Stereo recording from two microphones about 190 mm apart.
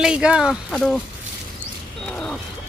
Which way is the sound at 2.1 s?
5° left (ahead or behind).